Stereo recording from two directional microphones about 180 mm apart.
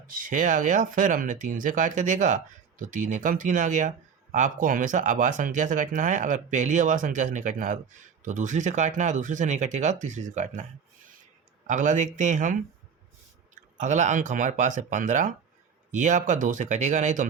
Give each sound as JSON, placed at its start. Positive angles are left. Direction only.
{"t": 0.1, "sound": "speech", "side_deg": -50}
{"t": 13.7, "sound": "speech", "side_deg": -45}